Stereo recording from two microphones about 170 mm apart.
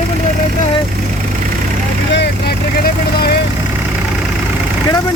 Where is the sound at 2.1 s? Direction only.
75° left (ahead or behind).